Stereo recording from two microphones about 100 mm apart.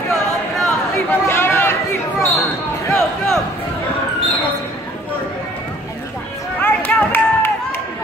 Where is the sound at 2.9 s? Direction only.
5° left (ahead or behind).